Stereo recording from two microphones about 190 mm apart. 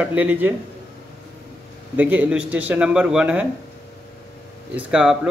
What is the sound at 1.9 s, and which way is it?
Speech, 10° right (ahead or behind).